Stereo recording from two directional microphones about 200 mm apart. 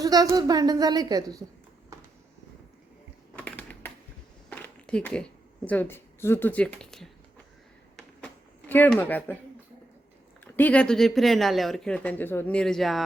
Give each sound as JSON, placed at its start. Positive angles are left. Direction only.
{"t": 0.0, "sound": "a woman's voice", "side_deg": -15}
{"t": 3.3, "sound": "typing", "side_deg": 5}
{"t": 4.4, "sound": "a sound", "side_deg": 10}
{"t": 5.6, "sound": "speech", "side_deg": 10}
{"t": 8.7, "sound": "speech", "side_deg": 10}
{"t": 10.4, "sound": "speech", "side_deg": 5}